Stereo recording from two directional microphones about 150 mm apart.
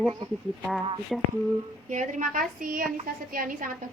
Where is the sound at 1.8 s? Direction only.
55° right (ahead or behind).